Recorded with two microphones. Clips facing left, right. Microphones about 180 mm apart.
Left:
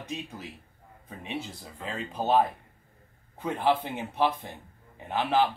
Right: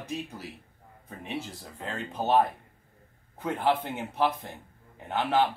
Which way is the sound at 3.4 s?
Centre (ahead or behind).